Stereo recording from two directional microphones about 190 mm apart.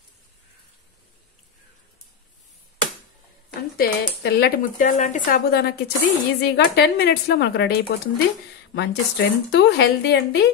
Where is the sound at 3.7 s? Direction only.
55° left (ahead or behind).